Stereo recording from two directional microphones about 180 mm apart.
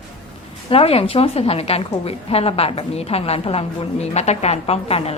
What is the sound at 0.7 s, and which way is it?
A woman's voice, 35° left (ahead or behind).